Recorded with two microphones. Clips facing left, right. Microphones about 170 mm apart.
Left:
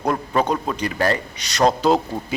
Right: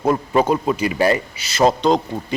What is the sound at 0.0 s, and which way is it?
A man's voice, 5° right (ahead or behind).